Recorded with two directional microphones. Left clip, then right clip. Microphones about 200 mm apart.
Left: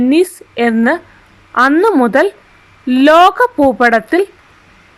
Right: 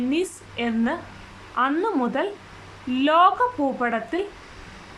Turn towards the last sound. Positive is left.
turn(degrees=45)  # may be behind; listen again after turning